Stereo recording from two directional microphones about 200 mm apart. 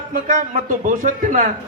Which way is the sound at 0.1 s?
40° right (ahead or behind).